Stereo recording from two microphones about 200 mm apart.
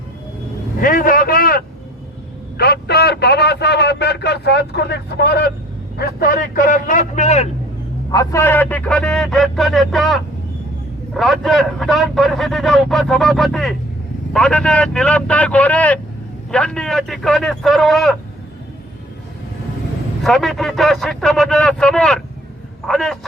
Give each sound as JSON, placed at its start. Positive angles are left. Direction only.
{"t": 0.8, "sound": "a sound", "side_deg": 45}
{"t": 6.1, "sound": "a man's voice", "side_deg": 45}
{"t": 8.1, "sound": "speech", "side_deg": 15}
{"t": 11.2, "sound": "a man's voice", "side_deg": 0}
{"t": 20.2, "sound": "speech", "side_deg": 0}